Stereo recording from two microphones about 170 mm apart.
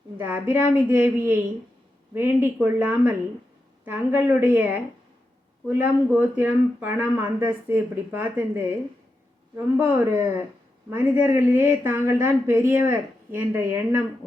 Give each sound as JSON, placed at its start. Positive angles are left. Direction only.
{"t": 0.2, "sound": "a woman's voice", "side_deg": -10}